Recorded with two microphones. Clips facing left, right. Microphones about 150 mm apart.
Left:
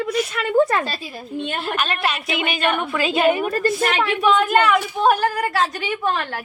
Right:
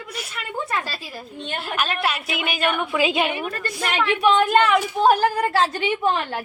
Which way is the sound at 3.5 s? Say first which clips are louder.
Left 10 dB; 40° left (ahead or behind).